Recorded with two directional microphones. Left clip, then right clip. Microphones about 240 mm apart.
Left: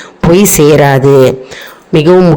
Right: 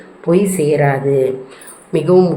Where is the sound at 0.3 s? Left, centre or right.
Left.